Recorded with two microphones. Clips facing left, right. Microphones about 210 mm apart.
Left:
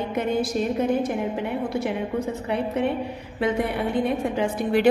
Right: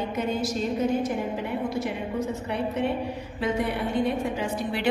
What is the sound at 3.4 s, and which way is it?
A woman's voice, 55° left (ahead or behind).